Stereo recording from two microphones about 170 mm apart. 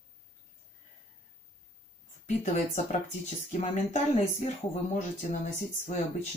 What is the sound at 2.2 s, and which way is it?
Speech, 45° left (ahead or behind).